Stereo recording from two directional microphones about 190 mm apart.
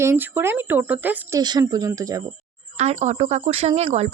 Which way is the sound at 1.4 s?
20° right (ahead or behind).